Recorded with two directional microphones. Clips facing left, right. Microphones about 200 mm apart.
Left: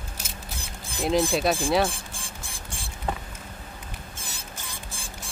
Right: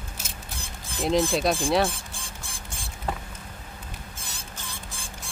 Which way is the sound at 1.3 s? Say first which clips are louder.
Even; centre (ahead or behind).